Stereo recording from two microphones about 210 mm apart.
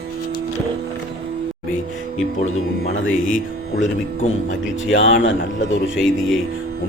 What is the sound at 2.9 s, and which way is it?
Speech, 65° left (ahead or behind).